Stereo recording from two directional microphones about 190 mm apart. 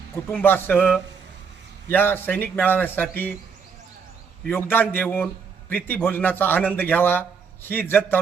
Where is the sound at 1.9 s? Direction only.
10° left (ahead or behind).